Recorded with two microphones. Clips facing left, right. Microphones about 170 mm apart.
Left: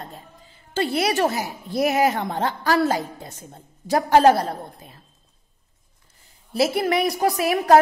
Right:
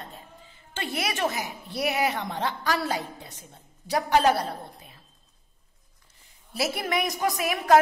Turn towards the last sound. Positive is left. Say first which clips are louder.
# left 6 dB
turn(degrees=35)  # may be behind; listen again after turning